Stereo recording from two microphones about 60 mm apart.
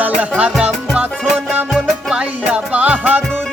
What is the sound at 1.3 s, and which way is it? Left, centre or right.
Music, right.